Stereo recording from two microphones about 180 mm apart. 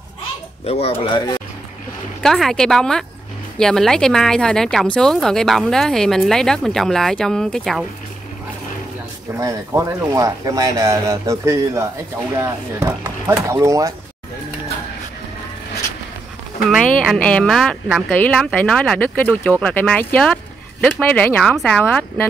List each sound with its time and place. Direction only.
0.7 s speech: 35° left (ahead or behind)
2.2 s speech: centre (ahead or behind)
9.4 s speech: 20° right (ahead or behind)
16.6 s speech: centre (ahead or behind)
18.2 s speech: 5° left (ahead or behind)